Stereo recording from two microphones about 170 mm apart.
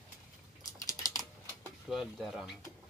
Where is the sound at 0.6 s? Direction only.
20° left (ahead or behind).